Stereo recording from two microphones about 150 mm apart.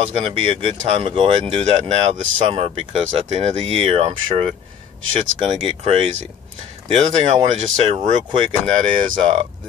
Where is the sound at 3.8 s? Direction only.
40° right (ahead or behind).